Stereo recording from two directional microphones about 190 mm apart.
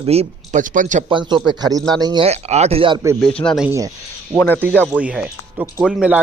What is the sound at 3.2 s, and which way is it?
Speech, 5° left (ahead or behind).